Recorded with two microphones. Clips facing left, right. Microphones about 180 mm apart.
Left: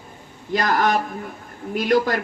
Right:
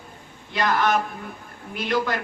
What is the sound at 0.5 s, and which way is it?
Speech, 40° left (ahead or behind).